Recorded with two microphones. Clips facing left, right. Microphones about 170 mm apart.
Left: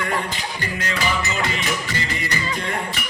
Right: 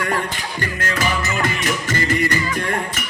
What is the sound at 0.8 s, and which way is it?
Music, 50° right (ahead or behind).